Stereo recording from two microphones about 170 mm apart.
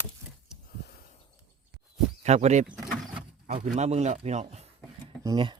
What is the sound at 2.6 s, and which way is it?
Mechanisms, centre (ahead or behind).